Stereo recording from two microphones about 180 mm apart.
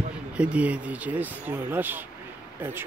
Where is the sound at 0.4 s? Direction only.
5° right (ahead or behind).